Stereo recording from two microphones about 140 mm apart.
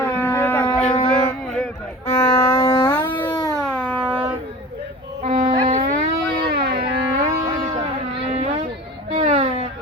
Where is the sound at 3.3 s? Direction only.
25° left (ahead or behind).